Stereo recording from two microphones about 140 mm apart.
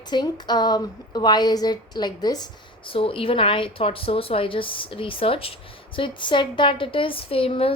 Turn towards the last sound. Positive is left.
turn(degrees=40)  # may be behind; listen again after turning